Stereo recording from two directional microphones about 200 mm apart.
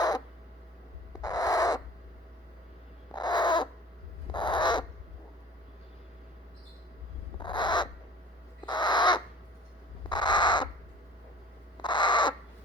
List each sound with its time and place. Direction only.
1.2 s owl: 20° left (ahead or behind)
3.1 s owl: 20° left (ahead or behind)
4.3 s crow: 25° left (ahead or behind)
7.3 s crow: 25° left (ahead or behind)
11.8 s crow: 20° left (ahead or behind)